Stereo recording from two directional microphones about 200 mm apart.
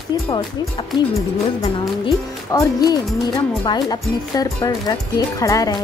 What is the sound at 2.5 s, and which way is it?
Speech, 20° left (ahead or behind).